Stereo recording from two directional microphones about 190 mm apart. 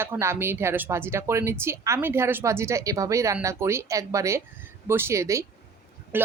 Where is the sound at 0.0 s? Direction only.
15° right (ahead or behind).